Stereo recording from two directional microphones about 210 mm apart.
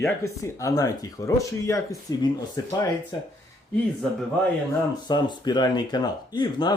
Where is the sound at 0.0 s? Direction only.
15° left (ahead or behind).